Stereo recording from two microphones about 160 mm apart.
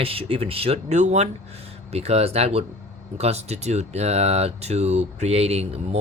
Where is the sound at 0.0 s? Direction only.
35° right (ahead or behind).